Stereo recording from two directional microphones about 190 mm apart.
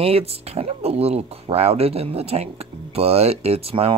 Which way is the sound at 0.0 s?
30° right (ahead or behind).